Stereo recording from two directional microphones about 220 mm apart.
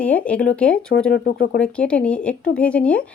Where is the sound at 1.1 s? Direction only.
45° left (ahead or behind).